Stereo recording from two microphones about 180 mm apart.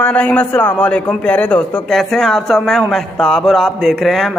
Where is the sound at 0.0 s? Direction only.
10° left (ahead or behind).